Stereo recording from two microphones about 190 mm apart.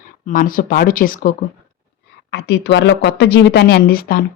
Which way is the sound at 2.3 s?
65° left (ahead or behind).